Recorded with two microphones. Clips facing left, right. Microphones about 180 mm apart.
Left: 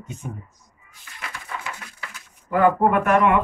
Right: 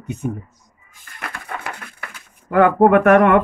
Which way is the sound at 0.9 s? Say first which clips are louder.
Right 4 dB; 50° right (ahead or behind).